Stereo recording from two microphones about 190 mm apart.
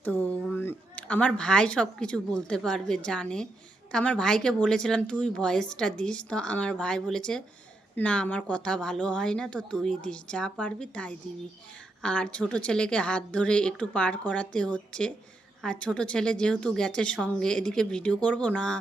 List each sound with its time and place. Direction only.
0.0 s a woman's voice: 10° left (ahead or behind)